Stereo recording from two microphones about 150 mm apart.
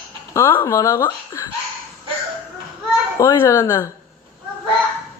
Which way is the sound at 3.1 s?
20° left (ahead or behind).